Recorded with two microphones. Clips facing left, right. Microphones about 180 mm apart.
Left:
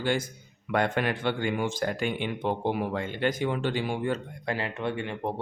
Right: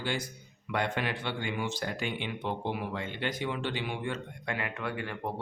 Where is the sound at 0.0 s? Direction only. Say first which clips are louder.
Left 6 dB; 50° left (ahead or behind).